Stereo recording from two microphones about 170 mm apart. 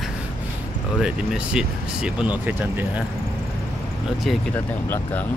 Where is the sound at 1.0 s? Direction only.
5° right (ahead or behind).